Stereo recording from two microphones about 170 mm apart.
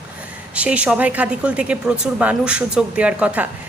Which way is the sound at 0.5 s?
5° right (ahead or behind).